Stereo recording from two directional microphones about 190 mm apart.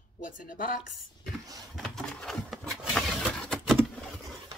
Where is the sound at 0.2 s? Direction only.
45° left (ahead or behind).